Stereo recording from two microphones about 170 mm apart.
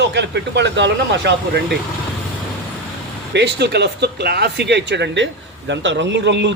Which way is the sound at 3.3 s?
85° right.